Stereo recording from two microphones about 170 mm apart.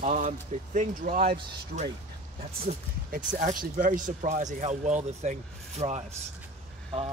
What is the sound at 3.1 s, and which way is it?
Speech, 50° right (ahead or behind).